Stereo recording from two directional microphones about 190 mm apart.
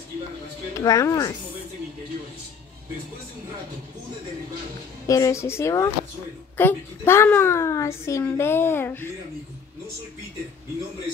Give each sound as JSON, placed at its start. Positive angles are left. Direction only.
{"t": 0.7, "sound": "a child's voice", "side_deg": 15}
{"t": 5.0, "sound": "a child's voice", "side_deg": 15}